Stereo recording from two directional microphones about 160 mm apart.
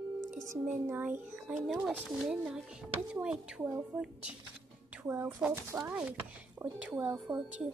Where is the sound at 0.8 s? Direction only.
15° right (ahead or behind).